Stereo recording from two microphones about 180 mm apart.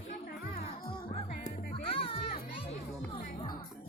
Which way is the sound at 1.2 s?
50° left (ahead or behind).